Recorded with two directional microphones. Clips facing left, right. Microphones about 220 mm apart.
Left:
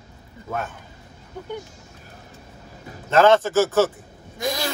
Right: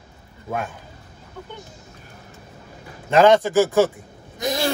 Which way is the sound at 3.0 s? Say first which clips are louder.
Right 1 dB; 15° right (ahead or behind).